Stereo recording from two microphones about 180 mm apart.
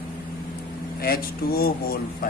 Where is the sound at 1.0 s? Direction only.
55° left (ahead or behind).